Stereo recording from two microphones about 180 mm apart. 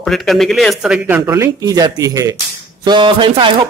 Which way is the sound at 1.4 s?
20° right (ahead or behind).